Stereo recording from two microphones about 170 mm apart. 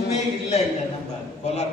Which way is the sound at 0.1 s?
40° left (ahead or behind).